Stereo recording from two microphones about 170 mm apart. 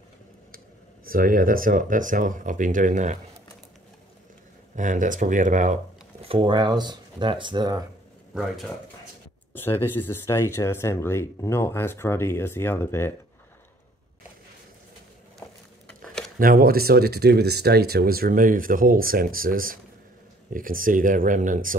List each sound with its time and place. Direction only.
1.0 s speech: 55° right (ahead or behind)
4.7 s speech: 50° right (ahead or behind)
6.2 s speech: 30° right (ahead or behind)
8.4 s speech: centre (ahead or behind)
9.5 s speech: 15° left (ahead or behind)
16.3 s speech: 60° right (ahead or behind)